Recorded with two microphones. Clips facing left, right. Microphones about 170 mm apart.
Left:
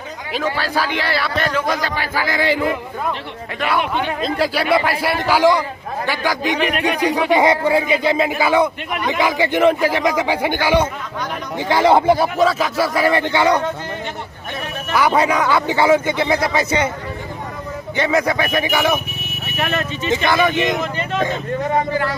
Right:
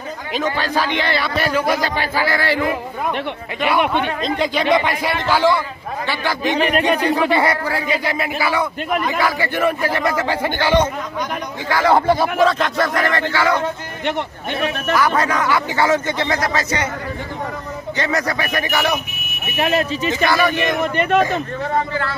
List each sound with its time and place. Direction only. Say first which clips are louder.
0.3 s a man's voice: even; 5° left (ahead or behind)
1.4 s speech: right 3 dB; 10° right (ahead or behind)
1.8 s speech: right 2 dB; 20° right (ahead or behind)
2.2 s a man's voice: left 3 dB; 15° left (ahead or behind)
4.2 s a man's voice: even; 5° left (ahead or behind)
12.2 s a man's voice: even; 5° left (ahead or behind)
14.9 s a man's voice: left 3 dB; 15° left (ahead or behind)
17.9 s a man's voice: left 4 dB; 15° left (ahead or behind)
19.6 s speech: right 4 dB; 30° right (ahead or behind)
20.2 s speech: left 1 dB; 20° left (ahead or behind)
20.9 s speech: right 6 dB; 65° right (ahead or behind)